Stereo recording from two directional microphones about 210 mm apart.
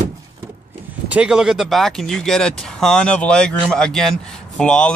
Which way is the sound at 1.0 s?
5° right (ahead or behind).